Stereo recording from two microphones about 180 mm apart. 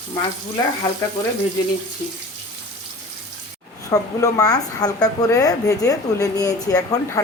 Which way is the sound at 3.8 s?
20° left (ahead or behind).